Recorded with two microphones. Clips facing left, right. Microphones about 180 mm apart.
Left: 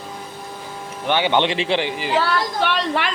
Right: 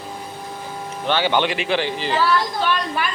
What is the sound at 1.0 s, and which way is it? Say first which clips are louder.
Speech: left 1 dB; 20° left (ahead or behind).